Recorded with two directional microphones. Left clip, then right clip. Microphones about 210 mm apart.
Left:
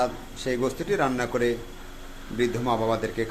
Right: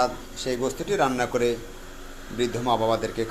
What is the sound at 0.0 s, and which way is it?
A man's voice, 20° left (ahead or behind).